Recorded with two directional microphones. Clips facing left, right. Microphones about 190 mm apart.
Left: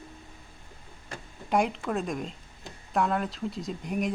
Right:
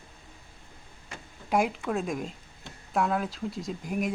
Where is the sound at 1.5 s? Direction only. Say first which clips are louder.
Even; 5° right (ahead or behind).